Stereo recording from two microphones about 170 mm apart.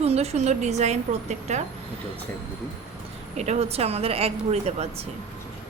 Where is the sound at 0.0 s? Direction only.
40° right (ahead or behind).